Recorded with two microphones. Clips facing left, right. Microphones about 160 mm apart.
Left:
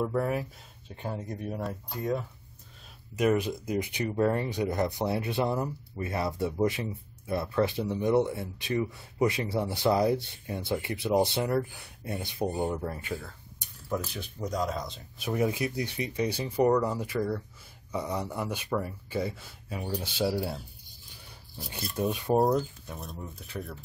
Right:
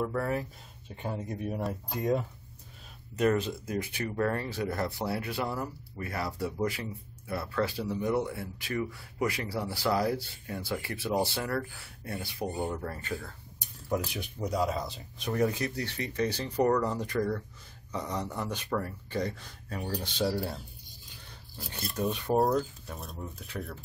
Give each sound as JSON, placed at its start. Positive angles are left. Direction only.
{"t": 0.0, "sound": "speech", "side_deg": 15}
{"t": 0.9, "sound": "speech", "side_deg": -5}
{"t": 1.9, "sound": "speech", "side_deg": -20}
{"t": 3.2, "sound": "speech", "side_deg": 10}
{"t": 13.8, "sound": "speech", "side_deg": -15}
{"t": 15.1, "sound": "speech", "side_deg": 5}
{"t": 22.9, "sound": "speech", "side_deg": 0}